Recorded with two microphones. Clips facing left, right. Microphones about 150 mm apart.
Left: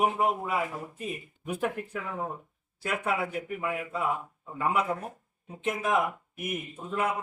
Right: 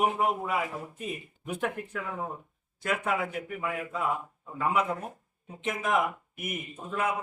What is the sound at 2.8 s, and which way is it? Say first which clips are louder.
A man's voice: even; 5° left (ahead or behind).